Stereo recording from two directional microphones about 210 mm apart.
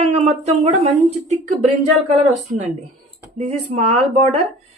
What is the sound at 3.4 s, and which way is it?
Speech, 35° right (ahead or behind).